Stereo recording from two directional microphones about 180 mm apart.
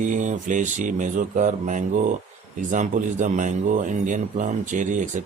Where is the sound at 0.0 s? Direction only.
45° right (ahead or behind).